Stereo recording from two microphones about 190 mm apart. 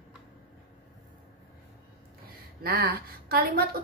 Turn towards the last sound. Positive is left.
turn(degrees=-50)  # may be behind; listen again after turning